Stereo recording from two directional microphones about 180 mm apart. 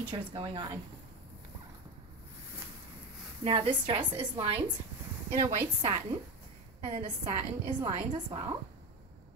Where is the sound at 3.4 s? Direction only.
30° right (ahead or behind).